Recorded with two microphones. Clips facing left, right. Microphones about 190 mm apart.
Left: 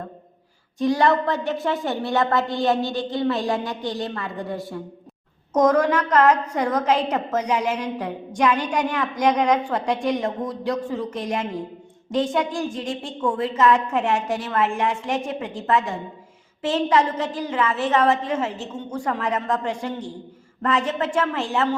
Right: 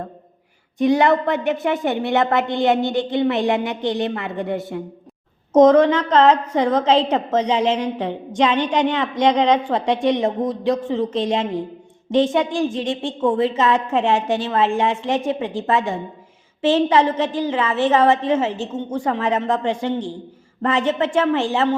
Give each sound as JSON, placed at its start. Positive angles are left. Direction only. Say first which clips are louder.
{"t": 0.8, "sound": "a woman's voice", "louder": "right 3 dB", "side_deg": -20}